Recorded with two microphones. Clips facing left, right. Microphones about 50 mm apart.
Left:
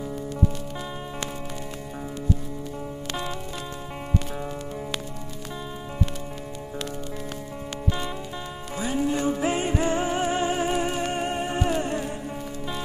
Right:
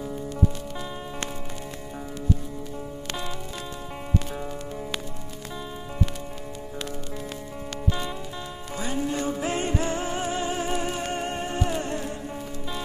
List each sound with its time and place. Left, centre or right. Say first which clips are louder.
8.7 s music: left 3 dB; centre